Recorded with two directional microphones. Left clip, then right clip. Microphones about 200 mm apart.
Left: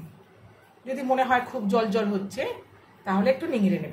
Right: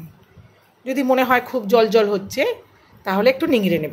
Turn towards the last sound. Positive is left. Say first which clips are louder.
# right 7 dB
turn(degrees=-50)  # may be behind; listen again after turning